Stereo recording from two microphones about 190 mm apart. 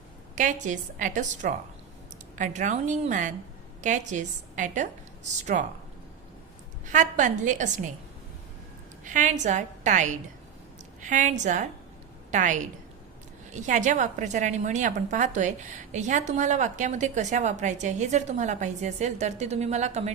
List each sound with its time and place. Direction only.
0.3 s a woman's voice: 40° right (ahead or behind)
6.8 s a woman's voice: 40° right (ahead or behind)
9.0 s a woman's voice: 40° right (ahead or behind)